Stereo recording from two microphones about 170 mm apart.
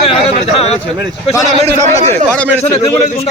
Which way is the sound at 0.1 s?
40° left (ahead or behind).